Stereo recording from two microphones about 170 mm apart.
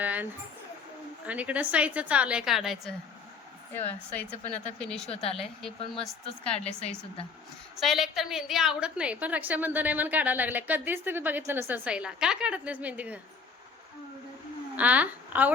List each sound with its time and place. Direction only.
0.0 s a sound: 10° right (ahead or behind)
1.3 s a woman's voice: 10° right (ahead or behind)
3.7 s speech: 10° left (ahead or behind)
5.0 s a woman's voice: 35° left (ahead or behind)
5.4 s speech: centre (ahead or behind)
6.7 s a woman's voice: 40° left (ahead or behind)
7.8 s a woman's voice: centre (ahead or behind)
14.8 s a woman's voice: 10° right (ahead or behind)